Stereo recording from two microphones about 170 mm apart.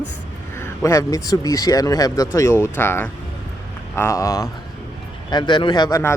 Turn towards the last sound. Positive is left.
turn(degrees=25)  # may be behind; listen again after turning